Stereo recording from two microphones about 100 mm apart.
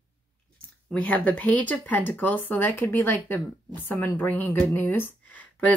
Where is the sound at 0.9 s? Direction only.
15° left (ahead or behind).